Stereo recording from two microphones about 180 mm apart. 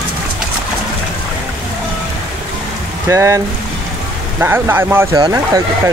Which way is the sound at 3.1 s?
15° right (ahead or behind).